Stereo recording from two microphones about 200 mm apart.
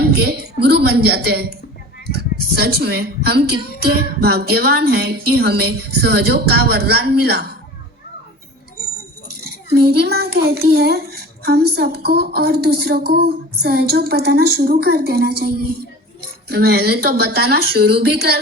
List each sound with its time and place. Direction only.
0.0 s a child's voice: 50° right (ahead or behind)
9.4 s a child's voice: 55° right (ahead or behind)
16.5 s a child's voice: 50° right (ahead or behind)